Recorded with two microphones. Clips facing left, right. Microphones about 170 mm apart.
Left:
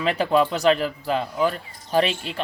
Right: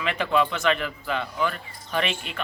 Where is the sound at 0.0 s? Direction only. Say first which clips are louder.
Left 4 dB; 35° left (ahead or behind).